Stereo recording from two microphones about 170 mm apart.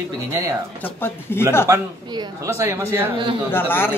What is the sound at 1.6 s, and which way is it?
Speech, 20° right (ahead or behind).